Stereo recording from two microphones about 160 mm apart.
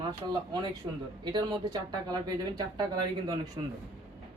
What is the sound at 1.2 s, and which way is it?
Speech, 25° right (ahead or behind).